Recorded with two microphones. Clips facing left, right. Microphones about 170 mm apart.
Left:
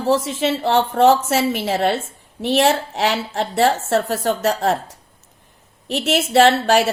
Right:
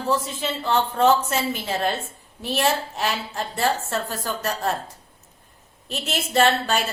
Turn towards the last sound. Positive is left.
turn(degrees=85)